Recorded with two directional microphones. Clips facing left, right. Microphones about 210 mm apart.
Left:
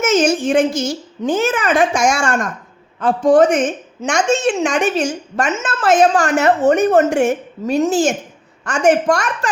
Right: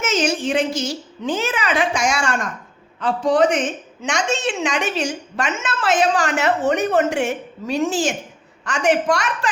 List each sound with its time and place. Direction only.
0.0 s a woman's voice: 45° left (ahead or behind)